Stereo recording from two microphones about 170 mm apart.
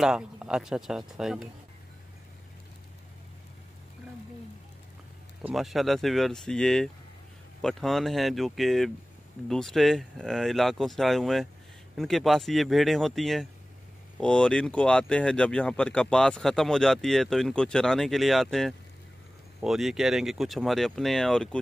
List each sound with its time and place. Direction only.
0.0 s speech: 5° right (ahead or behind)
5.4 s speech: centre (ahead or behind)